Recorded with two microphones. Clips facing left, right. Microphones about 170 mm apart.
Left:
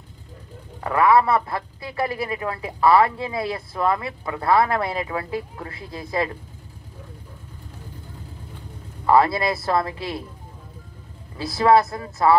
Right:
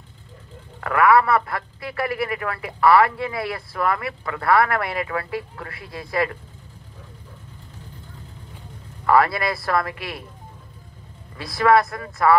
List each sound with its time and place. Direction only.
0.7 s speech: 20° left (ahead or behind)
9.0 s speech: 25° left (ahead or behind)
11.3 s speech: 25° left (ahead or behind)